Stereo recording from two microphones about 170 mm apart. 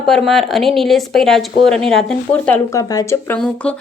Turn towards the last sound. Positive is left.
turn(degrees=15)  # may be behind; listen again after turning